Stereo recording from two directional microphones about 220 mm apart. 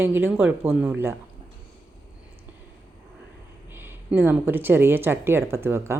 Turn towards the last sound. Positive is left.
turn(degrees=-10)  # may be behind; listen again after turning